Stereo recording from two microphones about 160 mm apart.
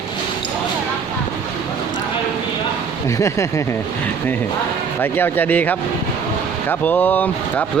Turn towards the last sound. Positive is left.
turn(degrees=10)  # may be behind; listen again after turning